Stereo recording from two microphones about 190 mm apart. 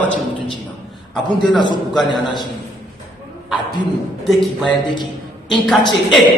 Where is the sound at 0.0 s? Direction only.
5° left (ahead or behind).